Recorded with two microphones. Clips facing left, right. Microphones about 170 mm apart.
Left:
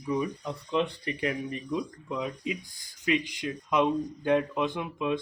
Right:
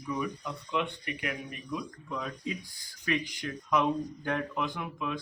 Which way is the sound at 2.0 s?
15° left (ahead or behind).